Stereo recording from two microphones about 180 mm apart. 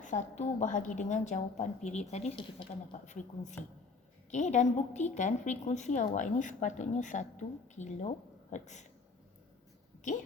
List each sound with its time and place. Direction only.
0.0 s a woman's voice: 40° left (ahead or behind)
3.1 s a man's voice: 45° left (ahead or behind)